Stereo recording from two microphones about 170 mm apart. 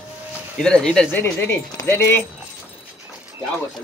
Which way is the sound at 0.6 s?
5° left (ahead or behind).